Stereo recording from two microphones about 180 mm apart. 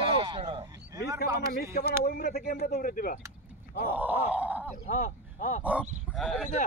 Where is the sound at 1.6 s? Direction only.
60° left (ahead or behind).